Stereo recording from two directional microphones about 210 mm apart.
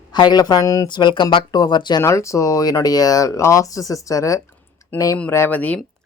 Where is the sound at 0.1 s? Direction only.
20° left (ahead or behind).